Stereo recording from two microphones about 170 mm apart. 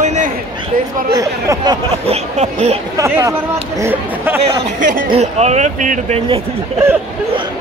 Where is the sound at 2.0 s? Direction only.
40° right (ahead or behind).